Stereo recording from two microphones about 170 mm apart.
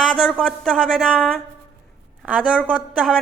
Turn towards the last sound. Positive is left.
turn(degrees=-5)  # may be behind; listen again after turning